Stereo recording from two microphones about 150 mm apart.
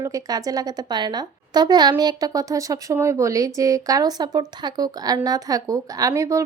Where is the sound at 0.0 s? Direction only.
25° right (ahead or behind).